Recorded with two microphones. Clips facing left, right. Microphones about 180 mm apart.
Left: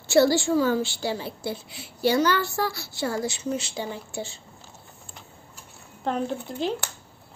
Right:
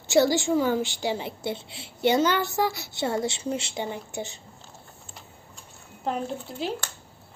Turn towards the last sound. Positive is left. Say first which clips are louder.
# left 3 dB
turn(degrees=-5)  # may be behind; listen again after turning